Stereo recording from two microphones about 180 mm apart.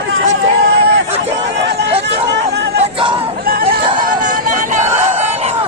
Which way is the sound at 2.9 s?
30° right (ahead or behind).